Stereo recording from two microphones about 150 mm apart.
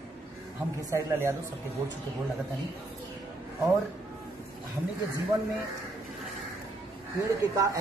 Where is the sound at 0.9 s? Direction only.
20° right (ahead or behind).